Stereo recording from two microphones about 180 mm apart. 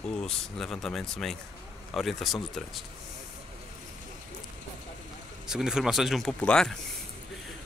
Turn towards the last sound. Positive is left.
turn(degrees=5)  # may be behind; listen again after turning